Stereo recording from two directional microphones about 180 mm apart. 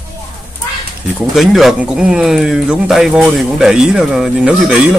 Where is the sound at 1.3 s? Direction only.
Centre (ahead or behind).